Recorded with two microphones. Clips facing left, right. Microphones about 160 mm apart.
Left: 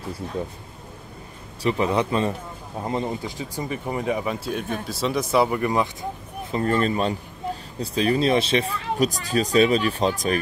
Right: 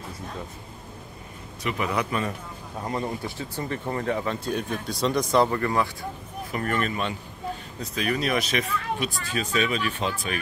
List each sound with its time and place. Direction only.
1.6 s a man's voice: 30° left (ahead or behind)
6.5 s speech: 25° left (ahead or behind)